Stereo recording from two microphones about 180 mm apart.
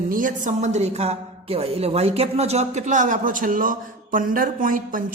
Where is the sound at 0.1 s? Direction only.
50° right (ahead or behind).